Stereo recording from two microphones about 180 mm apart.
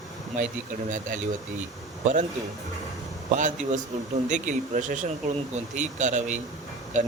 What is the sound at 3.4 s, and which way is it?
Speech, 45° right (ahead or behind).